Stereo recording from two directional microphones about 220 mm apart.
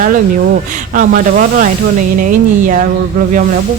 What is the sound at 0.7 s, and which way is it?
Speech, 35° right (ahead or behind).